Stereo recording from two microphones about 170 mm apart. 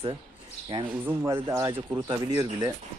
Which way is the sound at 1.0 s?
15° right (ahead or behind).